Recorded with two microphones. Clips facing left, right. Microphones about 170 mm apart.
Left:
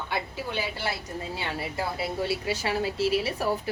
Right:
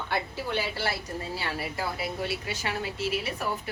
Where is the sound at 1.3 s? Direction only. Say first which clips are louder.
Left 2 dB; 25° left (ahead or behind).